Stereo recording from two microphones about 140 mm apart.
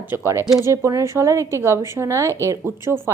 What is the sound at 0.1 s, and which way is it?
A woman's voice, 20° right (ahead or behind).